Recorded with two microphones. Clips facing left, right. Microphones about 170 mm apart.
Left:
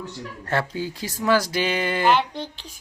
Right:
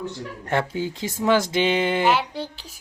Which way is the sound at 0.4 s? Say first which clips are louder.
Right 1 dB; 20° right (ahead or behind).